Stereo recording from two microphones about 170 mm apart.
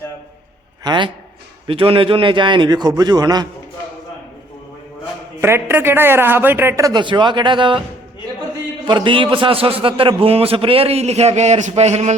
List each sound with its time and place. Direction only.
0.9 s a man's voice: 25° right (ahead or behind)
5.4 s a man's voice: 15° right (ahead or behind); by 7.8 s 30° right (ahead or behind)
8.8 s a man's voice: 30° right (ahead or behind)